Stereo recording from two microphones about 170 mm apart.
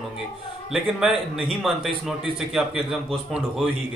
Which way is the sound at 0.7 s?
Centre (ahead or behind).